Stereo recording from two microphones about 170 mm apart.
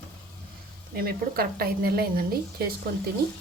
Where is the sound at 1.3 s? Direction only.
65° right (ahead or behind).